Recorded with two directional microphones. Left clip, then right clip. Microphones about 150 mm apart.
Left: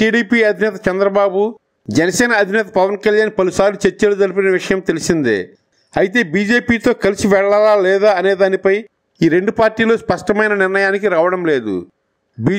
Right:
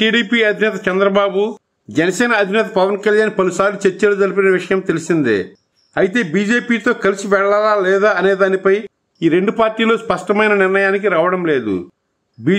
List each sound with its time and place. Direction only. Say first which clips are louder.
0.0 s speech: left 1 dB; 40° left (ahead or behind)